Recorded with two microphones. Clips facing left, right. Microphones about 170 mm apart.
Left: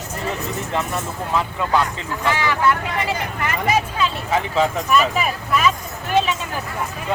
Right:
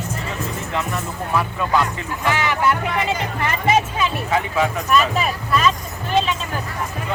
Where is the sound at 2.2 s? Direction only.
15° right (ahead or behind).